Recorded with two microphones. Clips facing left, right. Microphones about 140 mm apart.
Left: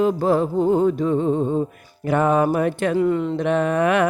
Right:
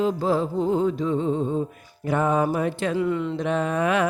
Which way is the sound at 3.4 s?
65° left (ahead or behind).